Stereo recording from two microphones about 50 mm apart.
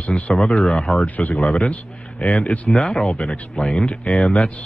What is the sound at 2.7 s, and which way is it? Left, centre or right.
Speech, centre.